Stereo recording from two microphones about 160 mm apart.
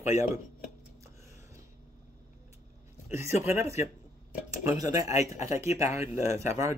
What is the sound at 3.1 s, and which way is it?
Speech, 15° right (ahead or behind).